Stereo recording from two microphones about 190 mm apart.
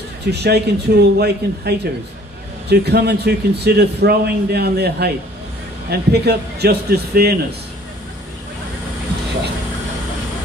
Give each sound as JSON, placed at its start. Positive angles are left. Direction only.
{"t": 0.3, "sound": "a man's voice", "side_deg": -60}